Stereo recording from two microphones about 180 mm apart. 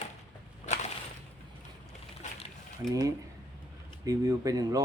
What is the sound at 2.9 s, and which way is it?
Mechanisms, 20° right (ahead or behind).